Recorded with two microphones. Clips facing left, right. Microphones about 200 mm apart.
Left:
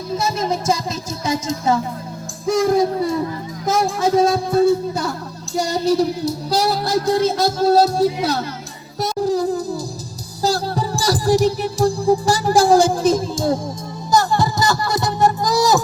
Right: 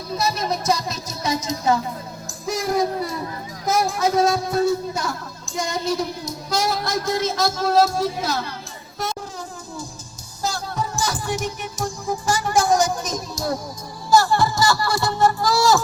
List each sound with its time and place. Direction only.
0.2 s speech: 25° left (ahead or behind)
4.3 s music: 30° left (ahead or behind)